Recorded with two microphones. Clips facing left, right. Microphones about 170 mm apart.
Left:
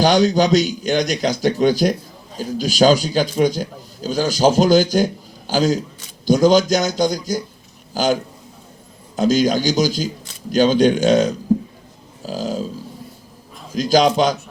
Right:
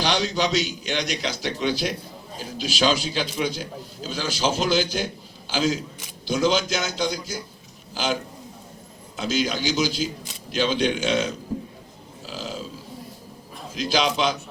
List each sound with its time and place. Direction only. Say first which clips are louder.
0.0 s a man's voice: left 9 dB; 45° left (ahead or behind)
13.7 s a man's voice: left 8 dB; 45° left (ahead or behind)